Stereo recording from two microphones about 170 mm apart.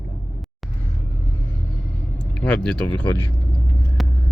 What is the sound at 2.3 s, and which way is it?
Speech, 5° left (ahead or behind).